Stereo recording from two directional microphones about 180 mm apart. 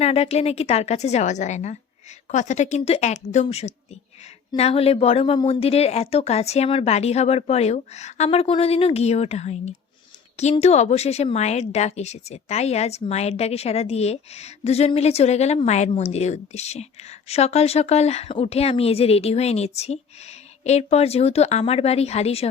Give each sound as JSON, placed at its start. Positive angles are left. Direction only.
{"t": 0.0, "sound": "a woman's voice", "side_deg": 35}